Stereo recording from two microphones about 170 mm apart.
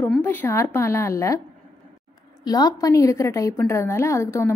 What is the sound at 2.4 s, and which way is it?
A woman's voice, 20° left (ahead or behind).